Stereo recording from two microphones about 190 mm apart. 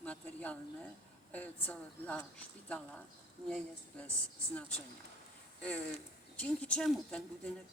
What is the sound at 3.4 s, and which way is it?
Speech, 5° left (ahead or behind).